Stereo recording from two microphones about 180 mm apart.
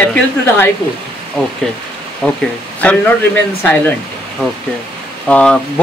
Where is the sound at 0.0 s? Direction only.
5° left (ahead or behind).